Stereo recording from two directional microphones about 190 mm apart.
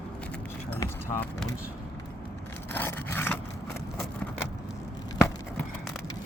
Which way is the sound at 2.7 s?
10° left (ahead or behind).